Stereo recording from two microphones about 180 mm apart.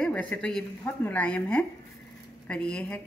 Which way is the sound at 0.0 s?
5° left (ahead or behind).